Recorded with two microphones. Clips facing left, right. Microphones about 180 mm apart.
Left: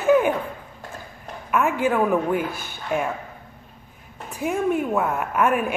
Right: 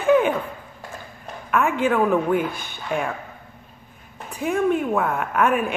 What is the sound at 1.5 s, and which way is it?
A woman's voice, 5° left (ahead or behind).